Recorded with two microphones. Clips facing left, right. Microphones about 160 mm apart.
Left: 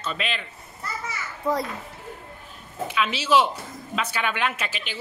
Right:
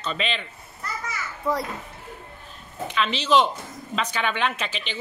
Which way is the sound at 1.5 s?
20° left (ahead or behind).